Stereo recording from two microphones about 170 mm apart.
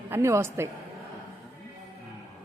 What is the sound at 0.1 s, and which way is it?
Speech, 15° right (ahead or behind).